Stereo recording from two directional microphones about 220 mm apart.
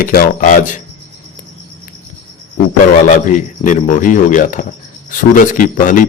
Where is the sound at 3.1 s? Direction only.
35° left (ahead or behind).